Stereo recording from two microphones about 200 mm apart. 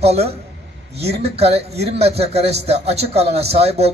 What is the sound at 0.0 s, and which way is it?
A man's voice, 30° right (ahead or behind).